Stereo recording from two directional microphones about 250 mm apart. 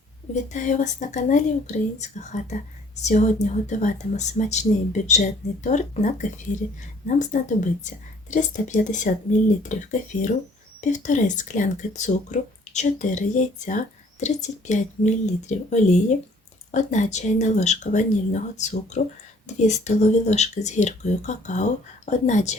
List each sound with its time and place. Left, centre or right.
0.3 s speech: left